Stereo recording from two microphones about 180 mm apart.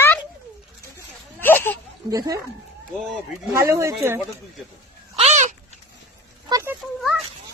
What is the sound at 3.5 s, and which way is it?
Speech, 15° right (ahead or behind).